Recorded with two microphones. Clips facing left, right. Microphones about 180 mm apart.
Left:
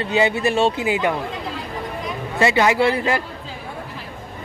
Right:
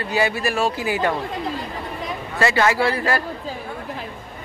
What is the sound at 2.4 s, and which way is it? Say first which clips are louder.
Speech: left 2 dB; 20° left (ahead or behind).